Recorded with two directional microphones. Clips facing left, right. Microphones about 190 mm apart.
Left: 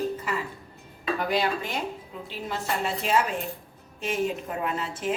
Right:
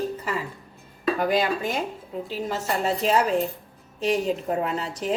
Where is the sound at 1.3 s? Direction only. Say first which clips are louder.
Right 3 dB; 45° right (ahead or behind).